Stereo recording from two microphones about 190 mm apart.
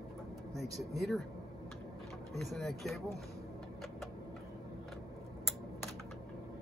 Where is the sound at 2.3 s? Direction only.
Centre (ahead or behind).